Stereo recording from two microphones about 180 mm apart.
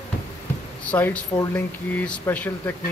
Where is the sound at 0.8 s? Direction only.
10° left (ahead or behind).